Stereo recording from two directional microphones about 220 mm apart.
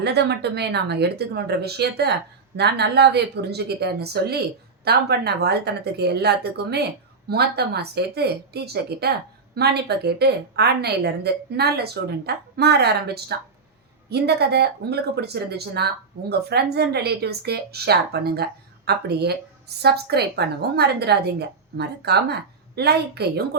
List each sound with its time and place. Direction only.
0.0 s a woman's voice: 50° right (ahead or behind)